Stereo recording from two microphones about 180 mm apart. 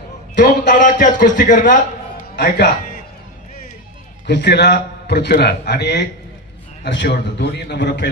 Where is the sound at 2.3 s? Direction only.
65° left (ahead or behind).